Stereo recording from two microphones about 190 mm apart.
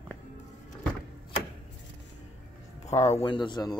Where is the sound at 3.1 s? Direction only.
25° left (ahead or behind).